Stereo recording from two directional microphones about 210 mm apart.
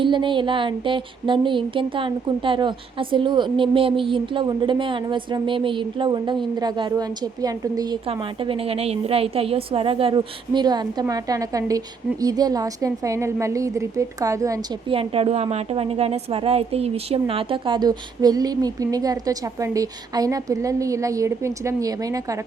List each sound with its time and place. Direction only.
0.0 s a woman's voice: 25° right (ahead or behind)